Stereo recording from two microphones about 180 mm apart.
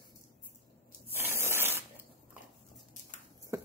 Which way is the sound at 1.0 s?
10° right (ahead or behind).